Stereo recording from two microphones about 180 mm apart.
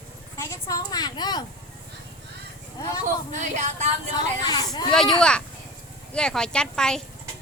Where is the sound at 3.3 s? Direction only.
40° right (ahead or behind).